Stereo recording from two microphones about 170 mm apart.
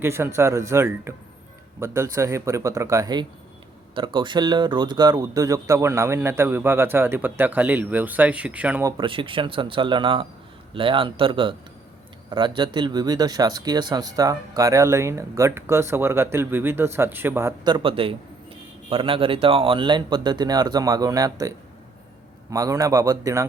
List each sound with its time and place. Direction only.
0.0 s speech: 15° right (ahead or behind)
8.8 s speech: 20° right (ahead or behind)
9.0 s speech: 30° right (ahead or behind); by 17.7 s 15° right (ahead or behind)
17.7 s speech: 30° right (ahead or behind)
22.5 s speech: 20° right (ahead or behind)